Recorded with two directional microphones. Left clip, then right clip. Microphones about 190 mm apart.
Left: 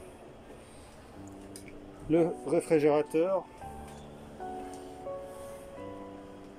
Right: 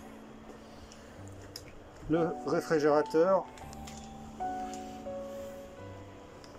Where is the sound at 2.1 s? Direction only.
15° left (ahead or behind).